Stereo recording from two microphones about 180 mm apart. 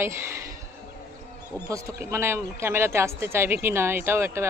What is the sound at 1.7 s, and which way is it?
Speech, 20° right (ahead or behind).